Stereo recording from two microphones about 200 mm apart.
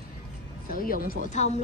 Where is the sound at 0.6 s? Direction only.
45° left (ahead or behind).